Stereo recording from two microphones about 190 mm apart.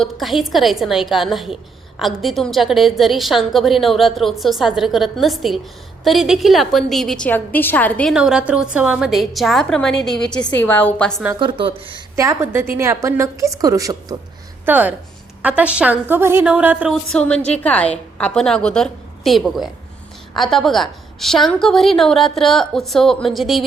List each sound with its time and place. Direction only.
0.0 s a woman's voice: centre (ahead or behind)
8.1 s a woman's voice: 5° right (ahead or behind)
11.3 s speech: 25° right (ahead or behind)
12.1 s a woman's voice: 15° right (ahead or behind)